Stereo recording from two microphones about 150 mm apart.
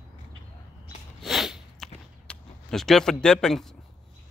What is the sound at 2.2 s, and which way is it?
Speech, centre (ahead or behind).